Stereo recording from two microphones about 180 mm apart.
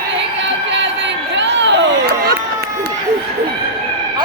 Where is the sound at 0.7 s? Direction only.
80° right; by 2.4 s 60° right (ahead or behind).